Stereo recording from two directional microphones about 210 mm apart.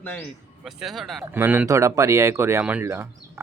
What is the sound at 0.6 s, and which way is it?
Speech, centre (ahead or behind).